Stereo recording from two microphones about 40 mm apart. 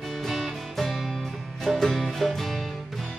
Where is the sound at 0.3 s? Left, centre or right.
Centre.